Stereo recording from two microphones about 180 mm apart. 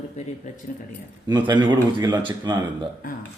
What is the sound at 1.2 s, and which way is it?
Speech, 25° right (ahead or behind).